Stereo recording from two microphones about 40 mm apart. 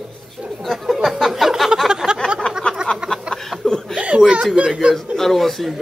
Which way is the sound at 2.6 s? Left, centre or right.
Left.